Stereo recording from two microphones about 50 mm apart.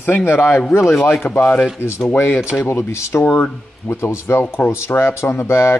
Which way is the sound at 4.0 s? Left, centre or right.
Left.